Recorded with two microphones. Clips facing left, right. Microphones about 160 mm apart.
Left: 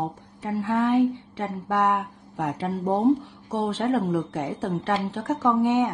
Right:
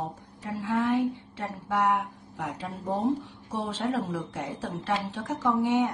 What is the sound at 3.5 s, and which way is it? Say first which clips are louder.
A woman's voice: left 5 dB; 75° left (ahead or behind).